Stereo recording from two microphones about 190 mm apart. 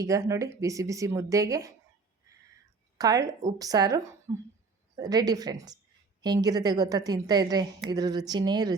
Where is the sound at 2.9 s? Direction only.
20° right (ahead or behind).